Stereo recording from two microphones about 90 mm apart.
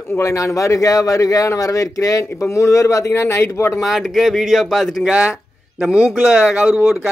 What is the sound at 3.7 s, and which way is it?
Speech, centre (ahead or behind).